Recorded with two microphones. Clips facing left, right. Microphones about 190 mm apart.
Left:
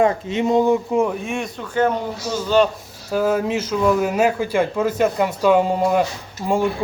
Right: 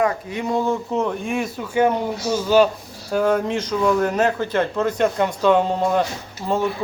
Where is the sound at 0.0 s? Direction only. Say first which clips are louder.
Left 4 dB; 25° left (ahead or behind).